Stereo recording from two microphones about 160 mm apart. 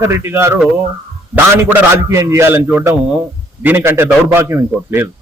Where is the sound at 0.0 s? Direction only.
15° right (ahead or behind).